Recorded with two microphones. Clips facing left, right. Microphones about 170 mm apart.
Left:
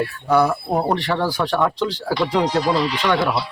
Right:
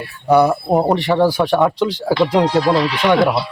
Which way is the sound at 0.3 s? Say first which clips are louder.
Right 5 dB; 20° right (ahead or behind).